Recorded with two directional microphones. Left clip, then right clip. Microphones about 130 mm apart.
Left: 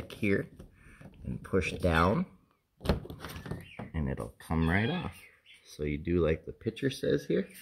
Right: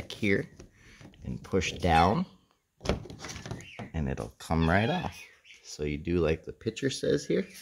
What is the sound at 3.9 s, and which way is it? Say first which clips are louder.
Speech: right 2 dB; 25° right (ahead or behind).